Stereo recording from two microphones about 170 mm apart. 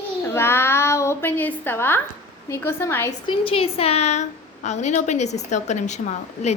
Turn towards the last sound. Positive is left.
turn(degrees=45)  # may be behind; listen again after turning